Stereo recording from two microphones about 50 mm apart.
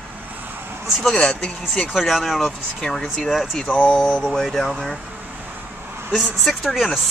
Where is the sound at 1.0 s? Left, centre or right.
Centre.